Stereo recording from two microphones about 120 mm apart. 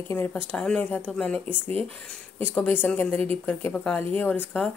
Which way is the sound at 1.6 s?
55° right (ahead or behind).